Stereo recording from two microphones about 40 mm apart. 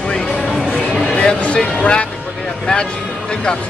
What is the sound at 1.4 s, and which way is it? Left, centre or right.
Speech, left.